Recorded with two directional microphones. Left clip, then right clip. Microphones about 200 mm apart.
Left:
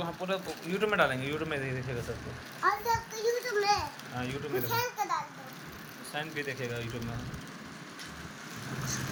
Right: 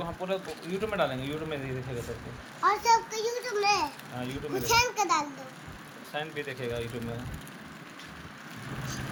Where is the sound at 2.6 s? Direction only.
45° right (ahead or behind).